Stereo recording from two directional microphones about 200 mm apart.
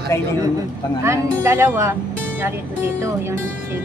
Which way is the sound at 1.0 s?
15° right (ahead or behind).